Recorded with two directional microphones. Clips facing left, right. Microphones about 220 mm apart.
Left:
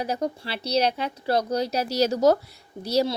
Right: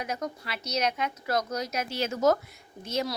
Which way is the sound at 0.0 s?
30° left (ahead or behind).